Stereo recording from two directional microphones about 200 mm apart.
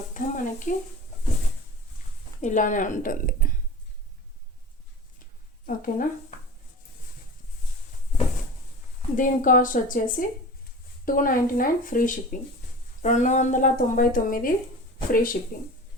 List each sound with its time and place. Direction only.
0.1 s speech: 40° left (ahead or behind)
2.4 s speech: 40° left (ahead or behind)
5.6 s a woman's voice: 45° left (ahead or behind)
9.1 s a woman's voice: 40° left (ahead or behind)